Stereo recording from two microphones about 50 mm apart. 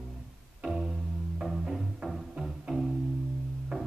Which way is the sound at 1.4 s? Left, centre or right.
Centre.